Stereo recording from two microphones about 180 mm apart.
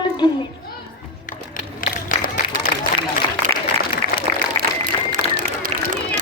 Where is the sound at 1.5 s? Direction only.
50° left (ahead or behind).